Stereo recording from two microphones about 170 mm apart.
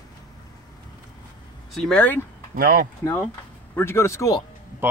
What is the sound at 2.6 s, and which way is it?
Speech, 60° right (ahead or behind).